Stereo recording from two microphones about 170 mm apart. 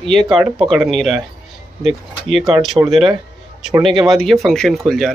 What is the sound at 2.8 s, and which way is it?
Speech, 15° right (ahead or behind).